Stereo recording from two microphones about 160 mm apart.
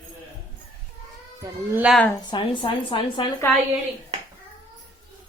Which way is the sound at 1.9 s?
5° right (ahead or behind).